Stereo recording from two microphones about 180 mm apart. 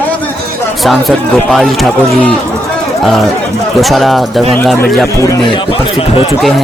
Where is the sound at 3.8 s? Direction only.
Centre (ahead or behind).